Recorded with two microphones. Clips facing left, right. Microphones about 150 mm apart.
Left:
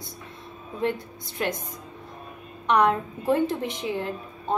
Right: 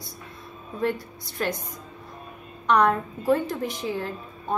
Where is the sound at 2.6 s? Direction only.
20° left (ahead or behind).